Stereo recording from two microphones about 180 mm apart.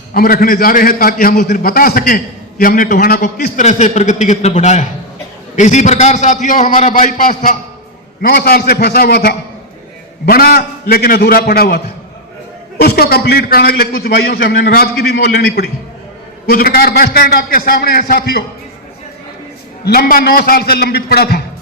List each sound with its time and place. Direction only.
0.1 s a man's voice: 55° left (ahead or behind)
3.6 s a man's voice: 40° left (ahead or behind)
8.3 s a man's voice: 60° left (ahead or behind)
12.8 s a man's voice: 60° left (ahead or behind)
19.8 s a man's voice: 55° left (ahead or behind)